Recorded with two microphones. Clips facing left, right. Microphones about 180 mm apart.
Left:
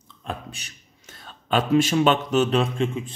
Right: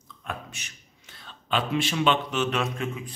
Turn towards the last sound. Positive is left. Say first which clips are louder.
# left 6 dB
turn(degrees=25)  # may be behind; listen again after turning